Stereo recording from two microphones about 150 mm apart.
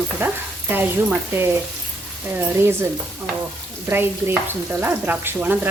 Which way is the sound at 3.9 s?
15° right (ahead or behind).